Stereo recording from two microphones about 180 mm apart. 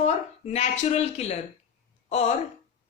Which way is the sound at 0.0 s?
35° left (ahead or behind).